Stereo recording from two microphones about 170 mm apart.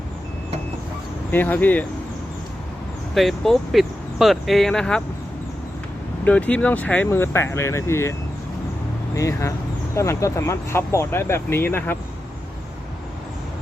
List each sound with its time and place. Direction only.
1.3 s speech: 10° left (ahead or behind)
3.2 s speech: centre (ahead or behind)
6.2 s speech: 10° left (ahead or behind)
9.1 s speech: 20° left (ahead or behind)